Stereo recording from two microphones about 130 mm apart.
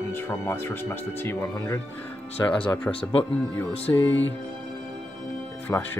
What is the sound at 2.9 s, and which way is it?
Speech, 45° left (ahead or behind).